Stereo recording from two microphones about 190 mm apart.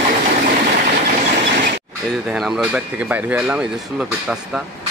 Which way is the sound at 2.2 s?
Centre (ahead or behind).